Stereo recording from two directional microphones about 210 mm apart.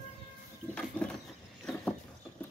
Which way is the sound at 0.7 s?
5° left (ahead or behind).